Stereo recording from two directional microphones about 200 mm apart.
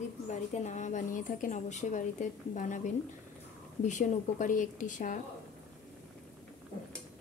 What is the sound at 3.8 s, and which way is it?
A woman's voice, 35° left (ahead or behind).